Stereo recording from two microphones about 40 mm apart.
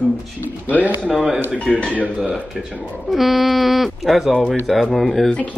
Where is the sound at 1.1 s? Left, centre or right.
Centre.